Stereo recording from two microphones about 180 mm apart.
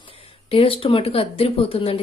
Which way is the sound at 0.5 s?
30° left (ahead or behind).